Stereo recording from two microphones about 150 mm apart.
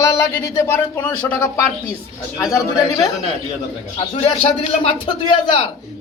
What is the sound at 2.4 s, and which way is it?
Speech, 20° left (ahead or behind).